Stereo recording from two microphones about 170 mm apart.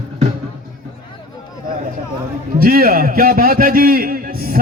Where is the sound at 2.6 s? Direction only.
60° right (ahead or behind).